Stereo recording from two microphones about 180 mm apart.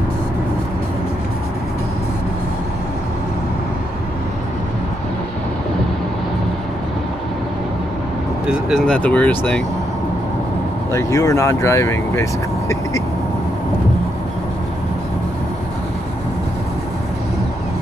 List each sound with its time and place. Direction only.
8.5 s speech: centre (ahead or behind)
10.9 s speech: 15° left (ahead or behind)